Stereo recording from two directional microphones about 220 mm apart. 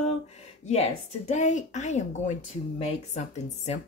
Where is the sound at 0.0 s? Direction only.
30° left (ahead or behind).